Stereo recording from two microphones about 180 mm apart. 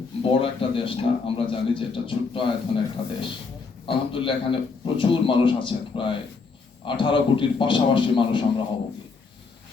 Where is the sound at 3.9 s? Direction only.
30° left (ahead or behind).